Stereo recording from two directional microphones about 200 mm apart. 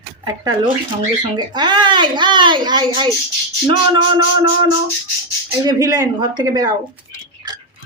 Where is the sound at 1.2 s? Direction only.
20° right (ahead or behind).